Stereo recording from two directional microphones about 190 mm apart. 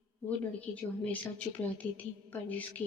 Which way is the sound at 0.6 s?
5° left (ahead or behind).